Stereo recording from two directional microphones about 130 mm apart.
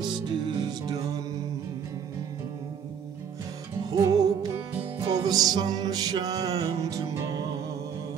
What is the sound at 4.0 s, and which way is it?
Music, 30° right (ahead or behind).